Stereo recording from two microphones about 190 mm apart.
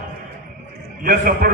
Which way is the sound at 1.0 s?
50° right (ahead or behind).